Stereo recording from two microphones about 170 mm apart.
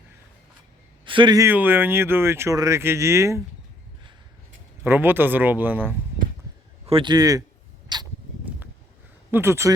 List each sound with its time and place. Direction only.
1.0 s speech: 30° right (ahead or behind)
1.5 s speech: 10° right (ahead or behind)
4.8 s speech: 10° right (ahead or behind)
6.8 s speech: 30° right (ahead or behind)
7.9 s a sound: 25° right (ahead or behind)
9.3 s speech: 15° right (ahead or behind)